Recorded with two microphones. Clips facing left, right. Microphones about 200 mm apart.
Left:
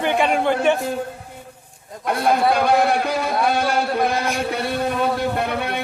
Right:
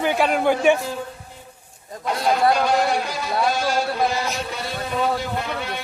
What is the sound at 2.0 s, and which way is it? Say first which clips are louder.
A man's voice: left 1 dB; 55° left (ahead or behind).